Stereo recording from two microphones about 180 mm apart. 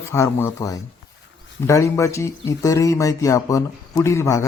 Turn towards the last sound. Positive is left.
turn(degrees=15)  # may be behind; listen again after turning